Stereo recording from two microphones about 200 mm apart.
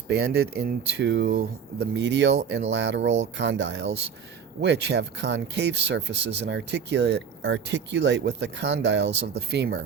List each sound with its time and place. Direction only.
0.1 s speech: 60° right (ahead or behind)